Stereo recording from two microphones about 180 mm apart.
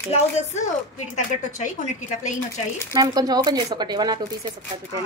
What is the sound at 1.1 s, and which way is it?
A woman's voice, 45° left (ahead or behind).